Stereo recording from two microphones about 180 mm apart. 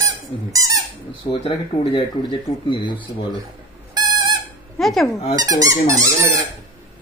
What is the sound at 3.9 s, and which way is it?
Fowl, 25° right (ahead or behind).